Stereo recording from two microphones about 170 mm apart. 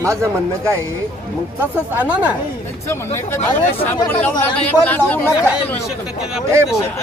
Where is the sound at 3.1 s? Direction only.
40° left (ahead or behind).